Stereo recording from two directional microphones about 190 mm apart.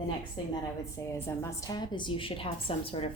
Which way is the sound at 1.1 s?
15° left (ahead or behind).